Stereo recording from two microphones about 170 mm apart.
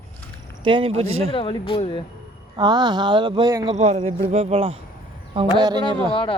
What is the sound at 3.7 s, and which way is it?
Speech, 40° right (ahead or behind).